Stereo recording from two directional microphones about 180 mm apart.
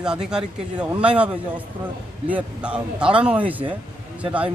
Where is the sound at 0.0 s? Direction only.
5° right (ahead or behind).